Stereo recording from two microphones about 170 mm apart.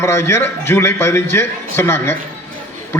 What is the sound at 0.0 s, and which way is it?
A man's voice, 15° left (ahead or behind).